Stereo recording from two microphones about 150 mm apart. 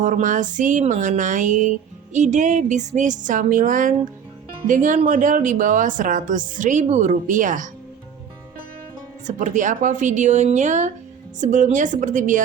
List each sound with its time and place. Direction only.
0.0 s a woman's voice: 60° right (ahead or behind)
9.2 s a woman's voice: 55° right (ahead or behind)